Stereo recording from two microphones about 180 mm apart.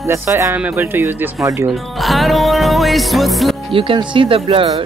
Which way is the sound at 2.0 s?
Centre (ahead or behind).